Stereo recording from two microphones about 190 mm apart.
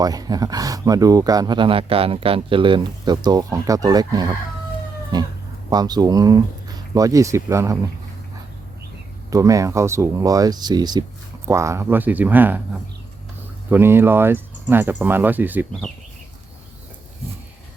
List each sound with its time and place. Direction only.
0.0 s speech: 20° right (ahead or behind)
9.3 s speech: 15° right (ahead or behind)
13.7 s speech: 10° right (ahead or behind)